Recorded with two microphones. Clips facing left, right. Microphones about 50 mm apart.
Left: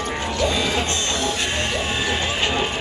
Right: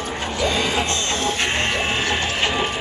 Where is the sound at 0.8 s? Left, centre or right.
Right.